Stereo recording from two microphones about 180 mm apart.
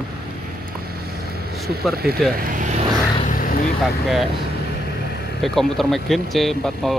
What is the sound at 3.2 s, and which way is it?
Vehicle, 50° left (ahead or behind).